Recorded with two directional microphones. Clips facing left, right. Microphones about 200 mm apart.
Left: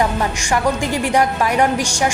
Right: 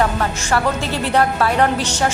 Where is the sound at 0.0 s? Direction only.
15° left (ahead or behind).